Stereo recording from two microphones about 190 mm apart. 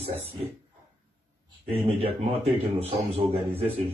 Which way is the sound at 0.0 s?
30° right (ahead or behind).